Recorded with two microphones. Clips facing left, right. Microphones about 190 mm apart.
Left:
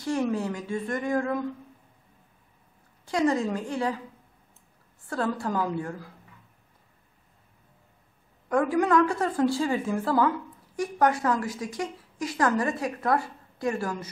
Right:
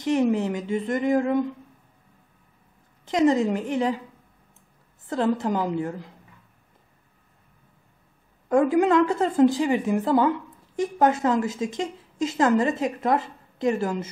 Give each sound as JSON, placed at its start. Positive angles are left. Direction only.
{"t": 0.0, "sound": "a woman's voice", "side_deg": -20}
{"t": 3.1, "sound": "a woman's voice", "side_deg": -20}
{"t": 5.0, "sound": "a woman's voice", "side_deg": -20}
{"t": 8.5, "sound": "a woman's voice", "side_deg": -25}